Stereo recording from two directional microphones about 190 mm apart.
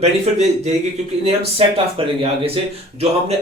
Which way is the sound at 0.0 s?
35° right (ahead or behind).